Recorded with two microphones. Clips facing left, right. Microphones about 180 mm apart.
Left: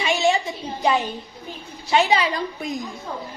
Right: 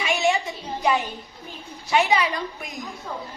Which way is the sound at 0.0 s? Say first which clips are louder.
Left 2 dB; 30° left (ahead or behind).